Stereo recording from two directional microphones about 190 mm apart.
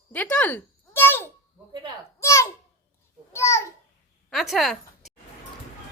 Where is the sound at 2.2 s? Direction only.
15° left (ahead or behind).